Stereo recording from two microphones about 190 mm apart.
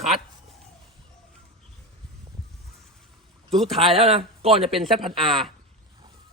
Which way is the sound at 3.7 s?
30° right (ahead or behind).